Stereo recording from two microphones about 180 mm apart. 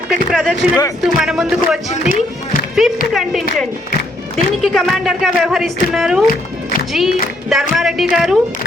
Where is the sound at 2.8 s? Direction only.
Centre (ahead or behind).